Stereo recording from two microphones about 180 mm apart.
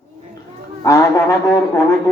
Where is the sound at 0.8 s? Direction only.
15° left (ahead or behind).